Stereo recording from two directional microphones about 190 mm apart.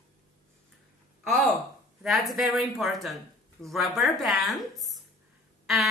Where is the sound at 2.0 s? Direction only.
Centre (ahead or behind).